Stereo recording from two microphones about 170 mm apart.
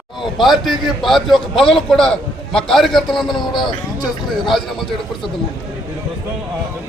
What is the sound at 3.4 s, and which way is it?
Speech, 25° left (ahead or behind).